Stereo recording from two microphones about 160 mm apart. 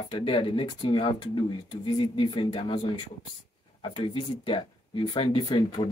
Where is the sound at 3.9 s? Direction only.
35° left (ahead or behind).